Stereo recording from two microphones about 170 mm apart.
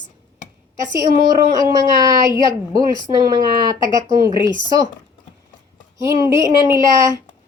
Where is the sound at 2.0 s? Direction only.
20° right (ahead or behind).